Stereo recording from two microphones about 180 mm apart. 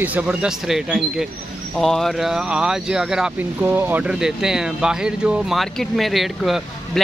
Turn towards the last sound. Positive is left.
turn(degrees=0)  # may be behind; listen again after turning